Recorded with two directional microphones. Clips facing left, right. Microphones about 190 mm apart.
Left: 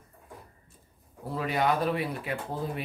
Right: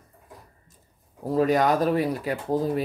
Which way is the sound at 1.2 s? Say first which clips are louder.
Right 7 dB; 40° right (ahead or behind).